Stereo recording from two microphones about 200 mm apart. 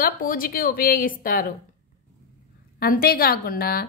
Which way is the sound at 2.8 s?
50° left (ahead or behind).